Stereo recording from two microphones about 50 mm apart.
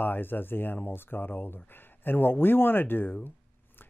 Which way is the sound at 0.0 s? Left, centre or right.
Left.